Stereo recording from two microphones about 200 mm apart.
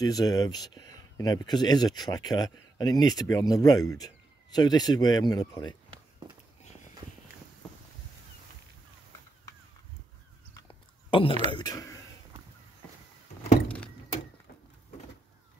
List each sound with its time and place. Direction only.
0.0 s speech: 20° left (ahead or behind)
6.6 s walk: 35° left (ahead or behind)
10.7 s a sound: 25° left (ahead or behind)
11.5 s speech: 20° left (ahead or behind)